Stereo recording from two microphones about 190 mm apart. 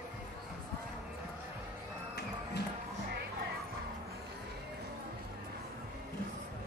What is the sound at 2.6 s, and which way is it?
Music, 60° left (ahead or behind).